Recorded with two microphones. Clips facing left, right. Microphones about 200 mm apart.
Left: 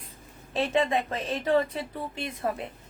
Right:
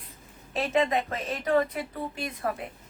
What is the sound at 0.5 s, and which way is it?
A woman's voice, 30° left (ahead or behind).